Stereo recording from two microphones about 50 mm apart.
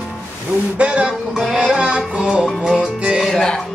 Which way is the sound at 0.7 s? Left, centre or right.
Right.